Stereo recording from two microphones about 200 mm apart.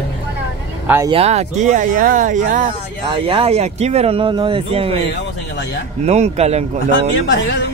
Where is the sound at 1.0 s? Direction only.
30° right (ahead or behind).